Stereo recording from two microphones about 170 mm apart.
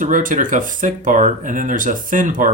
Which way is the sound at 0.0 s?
50° right (ahead or behind).